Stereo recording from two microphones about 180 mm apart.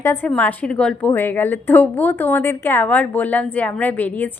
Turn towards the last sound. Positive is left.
turn(degrees=10)  # may be behind; listen again after turning